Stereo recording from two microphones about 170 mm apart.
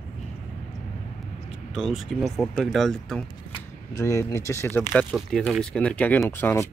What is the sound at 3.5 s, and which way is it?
Speech, 20° left (ahead or behind).